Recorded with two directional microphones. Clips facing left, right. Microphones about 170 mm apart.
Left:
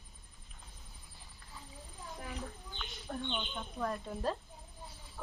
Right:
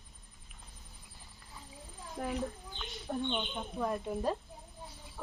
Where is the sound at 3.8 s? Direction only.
10° right (ahead or behind).